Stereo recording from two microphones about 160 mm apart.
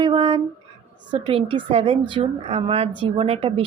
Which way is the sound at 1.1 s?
35° right (ahead or behind).